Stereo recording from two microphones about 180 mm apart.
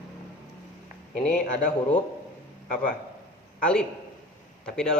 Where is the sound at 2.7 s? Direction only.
45° left (ahead or behind).